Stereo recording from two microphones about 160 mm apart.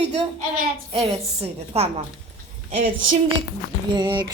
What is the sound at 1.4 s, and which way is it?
Speech, 40° right (ahead or behind).